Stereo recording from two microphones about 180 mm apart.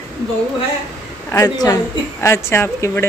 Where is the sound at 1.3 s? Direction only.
20° left (ahead or behind).